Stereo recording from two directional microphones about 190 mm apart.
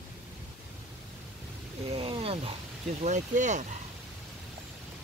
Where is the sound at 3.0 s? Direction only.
40° right (ahead or behind).